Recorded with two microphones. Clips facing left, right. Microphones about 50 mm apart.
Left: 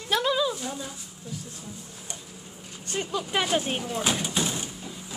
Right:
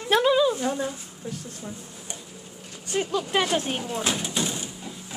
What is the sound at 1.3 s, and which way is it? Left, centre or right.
Speech, right.